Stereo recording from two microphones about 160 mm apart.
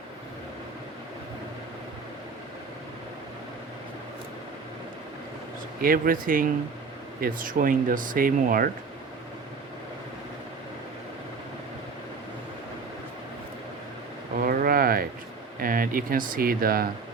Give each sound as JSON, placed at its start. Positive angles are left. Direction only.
{"t": 5.8, "sound": "speech", "side_deg": -60}
{"t": 14.4, "sound": "a sound", "side_deg": -65}
{"t": 15.6, "sound": "speech", "side_deg": -60}